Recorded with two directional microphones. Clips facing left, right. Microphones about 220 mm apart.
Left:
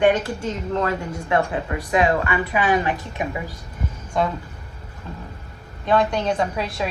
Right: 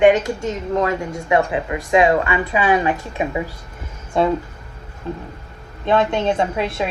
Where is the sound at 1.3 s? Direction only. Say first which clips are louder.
Right 3 dB; 15° right (ahead or behind).